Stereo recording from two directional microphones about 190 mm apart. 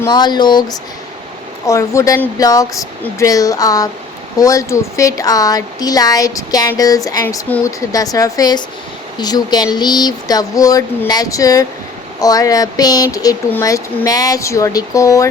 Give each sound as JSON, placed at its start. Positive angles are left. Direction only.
{"t": 0.0, "sound": "speech", "side_deg": 20}